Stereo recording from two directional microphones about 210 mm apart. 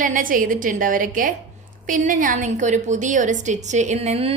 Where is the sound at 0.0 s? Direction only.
40° right (ahead or behind).